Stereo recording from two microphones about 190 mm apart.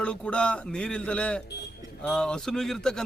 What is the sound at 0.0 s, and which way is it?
A man's voice, 5° left (ahead or behind).